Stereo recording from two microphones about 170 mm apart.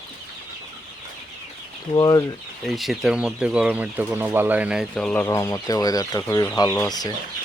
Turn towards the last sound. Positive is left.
turn(degrees=20)  # may be behind; listen again after turning